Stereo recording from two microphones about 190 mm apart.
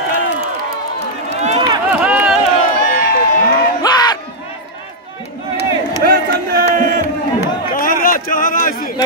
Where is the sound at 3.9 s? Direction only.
20° left (ahead or behind).